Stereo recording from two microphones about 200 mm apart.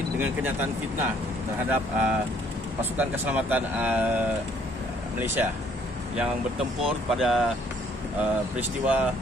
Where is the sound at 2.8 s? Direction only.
10° right (ahead or behind).